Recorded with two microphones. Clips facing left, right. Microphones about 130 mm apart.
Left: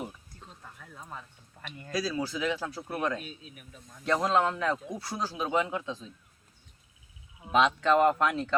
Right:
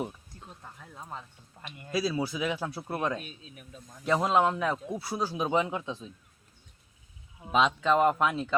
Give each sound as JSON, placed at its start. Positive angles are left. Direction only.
{"t": 0.6, "sound": "a sound", "side_deg": -20}
{"t": 1.9, "sound": "speech", "side_deg": -15}
{"t": 7.5, "sound": "speech", "side_deg": -10}